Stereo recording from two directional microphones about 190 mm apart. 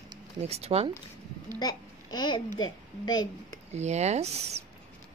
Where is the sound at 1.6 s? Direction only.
20° left (ahead or behind).